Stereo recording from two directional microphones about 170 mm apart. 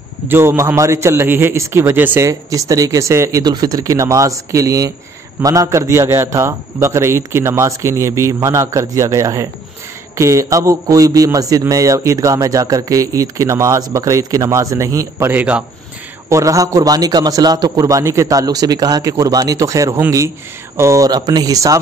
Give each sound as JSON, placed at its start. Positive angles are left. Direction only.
{"t": 0.3, "sound": "a man's voice", "side_deg": -15}